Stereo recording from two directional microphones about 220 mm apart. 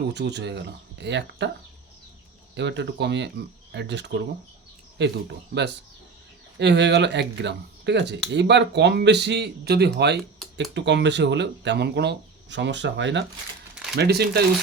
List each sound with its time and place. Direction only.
0.1 s speech: 50° right (ahead or behind)
2.6 s speech: 55° right (ahead or behind)